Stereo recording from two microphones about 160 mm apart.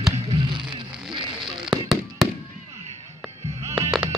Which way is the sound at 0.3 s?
30° right (ahead or behind).